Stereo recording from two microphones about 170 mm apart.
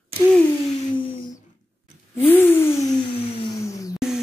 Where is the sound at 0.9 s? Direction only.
30° left (ahead or behind).